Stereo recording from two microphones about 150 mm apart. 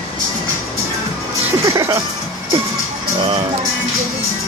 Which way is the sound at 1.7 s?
20° right (ahead or behind).